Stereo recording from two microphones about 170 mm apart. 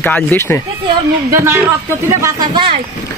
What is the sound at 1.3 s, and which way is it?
Speech, 15° right (ahead or behind).